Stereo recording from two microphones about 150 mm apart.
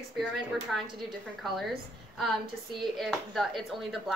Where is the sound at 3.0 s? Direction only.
Centre (ahead or behind).